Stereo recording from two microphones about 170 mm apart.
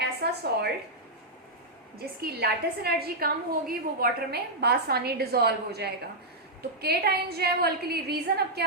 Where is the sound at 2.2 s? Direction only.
70° right (ahead or behind).